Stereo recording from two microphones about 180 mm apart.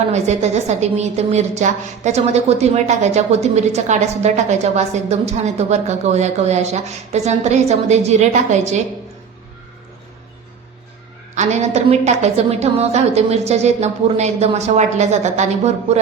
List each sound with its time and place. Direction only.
0.1 s a woman's voice: 40° right (ahead or behind)
11.3 s a woman's voice: 40° right (ahead or behind)